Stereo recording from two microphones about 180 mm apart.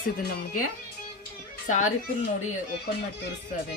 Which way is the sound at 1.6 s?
45° left (ahead or behind).